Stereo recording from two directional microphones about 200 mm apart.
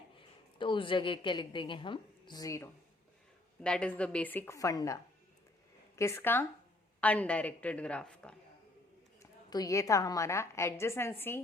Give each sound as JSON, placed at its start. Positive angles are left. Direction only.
{"t": 0.6, "sound": "a woman's voice", "side_deg": 25}
{"t": 3.6, "sound": "a woman's voice", "side_deg": 5}
{"t": 6.0, "sound": "a woman's voice", "side_deg": 15}
{"t": 9.5, "sound": "a woman's voice", "side_deg": 20}